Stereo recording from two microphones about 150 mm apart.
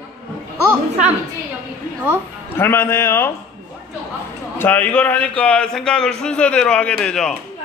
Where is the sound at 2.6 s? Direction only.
15° left (ahead or behind).